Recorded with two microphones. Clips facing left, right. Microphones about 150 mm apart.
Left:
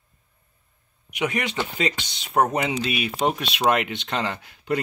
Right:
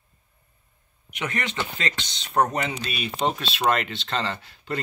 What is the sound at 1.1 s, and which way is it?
Speech, 10° left (ahead or behind).